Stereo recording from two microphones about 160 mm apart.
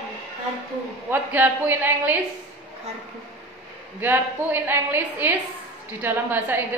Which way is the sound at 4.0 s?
10° right (ahead or behind).